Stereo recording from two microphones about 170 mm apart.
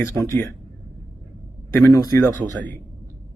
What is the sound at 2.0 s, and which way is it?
Speech, 15° left (ahead or behind).